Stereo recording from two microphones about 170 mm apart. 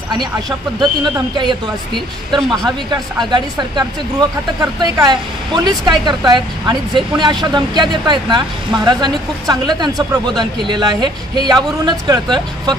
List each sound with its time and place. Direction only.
0.1 s speech: 25° right (ahead or behind)
3.3 s speech: 25° right (ahead or behind)